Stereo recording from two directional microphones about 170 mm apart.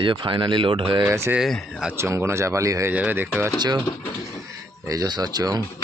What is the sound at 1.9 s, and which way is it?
Speech, 15° right (ahead or behind).